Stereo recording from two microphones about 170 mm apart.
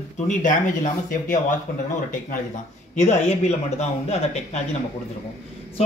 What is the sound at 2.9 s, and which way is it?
Speech, 40° left (ahead or behind).